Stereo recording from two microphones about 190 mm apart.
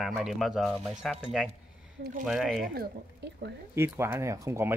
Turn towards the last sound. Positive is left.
turn(degrees=-15)  # may be behind; listen again after turning